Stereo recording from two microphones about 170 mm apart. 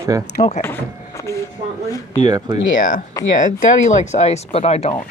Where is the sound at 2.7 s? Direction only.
50° left (ahead or behind).